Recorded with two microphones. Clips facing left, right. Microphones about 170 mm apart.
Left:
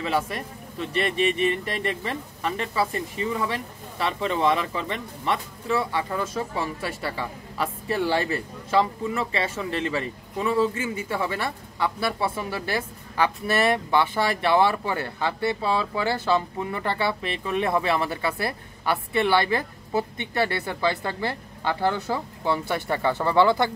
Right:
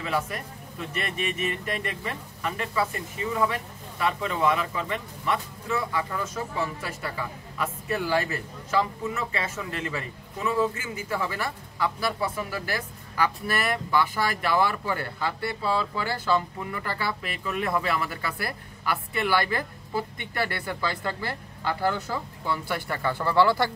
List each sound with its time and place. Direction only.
0.0 s speech: 30° left (ahead or behind)